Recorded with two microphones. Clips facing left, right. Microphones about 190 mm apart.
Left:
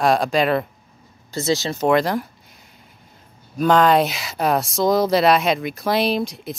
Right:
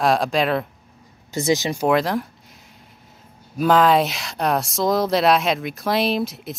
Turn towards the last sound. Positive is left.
turn(degrees=0)  # may be behind; listen again after turning